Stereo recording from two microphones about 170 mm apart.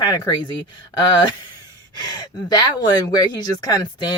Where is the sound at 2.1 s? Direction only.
25° left (ahead or behind).